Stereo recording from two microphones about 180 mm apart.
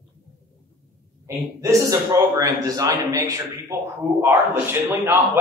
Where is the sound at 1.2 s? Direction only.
15° right (ahead or behind).